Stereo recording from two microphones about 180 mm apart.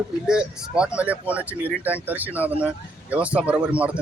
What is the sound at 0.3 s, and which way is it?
Speech, 5° right (ahead or behind).